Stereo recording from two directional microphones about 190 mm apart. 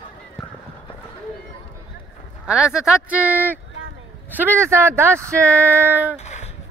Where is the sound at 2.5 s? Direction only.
5° right (ahead or behind).